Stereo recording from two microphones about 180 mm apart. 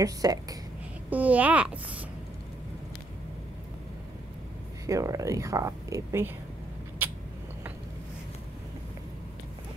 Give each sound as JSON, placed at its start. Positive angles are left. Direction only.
{"t": 0.0, "sound": "speech", "side_deg": -20}
{"t": 1.1, "sound": "speech", "side_deg": -10}
{"t": 4.8, "sound": "speech", "side_deg": -15}